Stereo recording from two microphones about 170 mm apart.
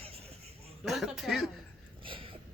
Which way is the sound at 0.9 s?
Centre (ahead or behind).